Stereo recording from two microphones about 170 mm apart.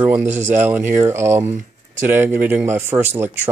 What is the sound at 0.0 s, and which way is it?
Speech, 10° right (ahead or behind).